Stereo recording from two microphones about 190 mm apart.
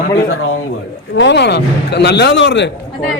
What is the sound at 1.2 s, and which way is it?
A man's voice, 65° left (ahead or behind).